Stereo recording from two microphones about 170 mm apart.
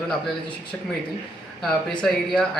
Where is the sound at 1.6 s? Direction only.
Centre (ahead or behind).